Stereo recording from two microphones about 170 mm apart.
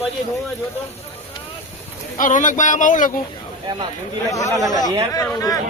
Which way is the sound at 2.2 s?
50° left (ahead or behind).